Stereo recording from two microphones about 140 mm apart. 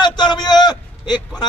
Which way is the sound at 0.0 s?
30° left (ahead or behind).